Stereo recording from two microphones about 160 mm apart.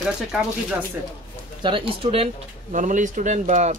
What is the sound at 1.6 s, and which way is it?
Speech, 35° right (ahead or behind).